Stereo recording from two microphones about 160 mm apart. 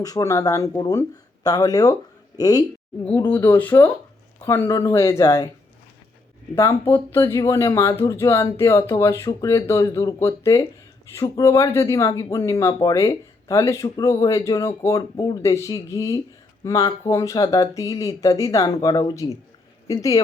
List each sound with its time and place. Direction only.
0.0 s speech: 20° left (ahead or behind)
3.0 s speech: 10° left (ahead or behind)
6.6 s speech: 20° left (ahead or behind)